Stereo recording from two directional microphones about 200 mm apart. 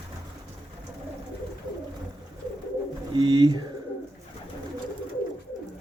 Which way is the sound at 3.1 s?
25° right (ahead or behind).